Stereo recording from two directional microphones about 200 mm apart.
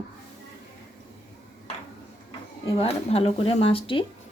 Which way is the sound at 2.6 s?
30° left (ahead or behind).